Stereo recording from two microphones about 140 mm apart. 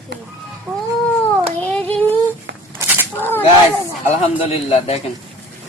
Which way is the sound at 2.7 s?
15° right (ahead or behind).